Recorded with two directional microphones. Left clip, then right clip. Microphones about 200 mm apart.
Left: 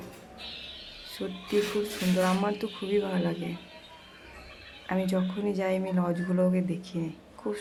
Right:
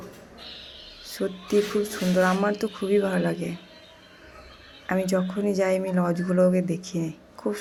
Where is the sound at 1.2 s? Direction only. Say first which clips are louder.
Right 5 dB; 15° right (ahead or behind).